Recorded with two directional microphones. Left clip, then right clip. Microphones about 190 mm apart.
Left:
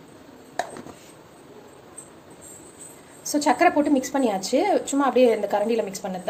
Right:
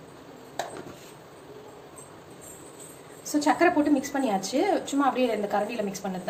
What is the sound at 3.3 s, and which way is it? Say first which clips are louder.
A woman's voice: left 3 dB; 50° left (ahead or behind).